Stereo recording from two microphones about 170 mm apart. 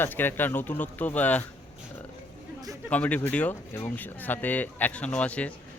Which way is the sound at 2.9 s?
10° left (ahead or behind).